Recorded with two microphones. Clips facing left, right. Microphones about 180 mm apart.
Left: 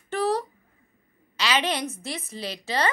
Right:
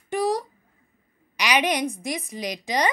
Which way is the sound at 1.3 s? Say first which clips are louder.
Right 3 dB; 15° right (ahead or behind).